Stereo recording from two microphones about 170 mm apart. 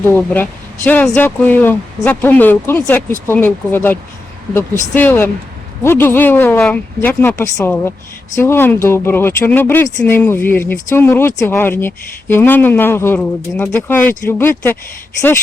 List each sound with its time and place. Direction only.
0.0 s speech: 10° left (ahead or behind)